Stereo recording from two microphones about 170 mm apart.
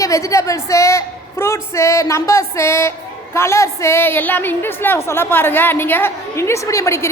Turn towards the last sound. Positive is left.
turn(degrees=15)  # may be behind; listen again after turning